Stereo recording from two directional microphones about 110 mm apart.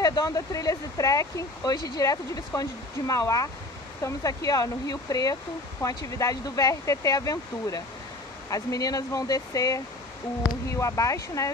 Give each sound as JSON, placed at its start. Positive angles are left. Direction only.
{"t": 0.0, "sound": "speech", "side_deg": 35}